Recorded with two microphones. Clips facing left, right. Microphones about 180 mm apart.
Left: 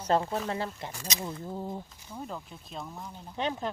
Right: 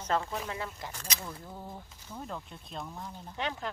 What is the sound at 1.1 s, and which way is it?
Speech, 20° left (ahead or behind).